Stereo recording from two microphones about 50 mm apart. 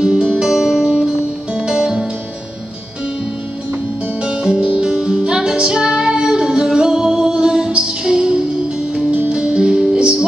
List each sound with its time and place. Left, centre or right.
0.0 s music: centre
4.2 s music: right
8.9 s music: right